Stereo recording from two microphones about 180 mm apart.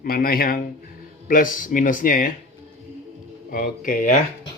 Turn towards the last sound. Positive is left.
turn(degrees=50)  # may be behind; listen again after turning